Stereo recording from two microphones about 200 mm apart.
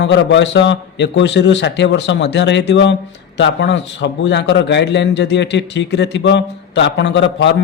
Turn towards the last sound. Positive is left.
turn(degrees=60)  # may be behind; listen again after turning